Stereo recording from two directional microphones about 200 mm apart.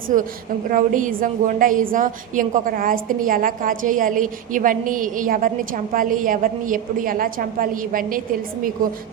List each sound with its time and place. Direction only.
0.1 s a woman's voice: 40° right (ahead or behind)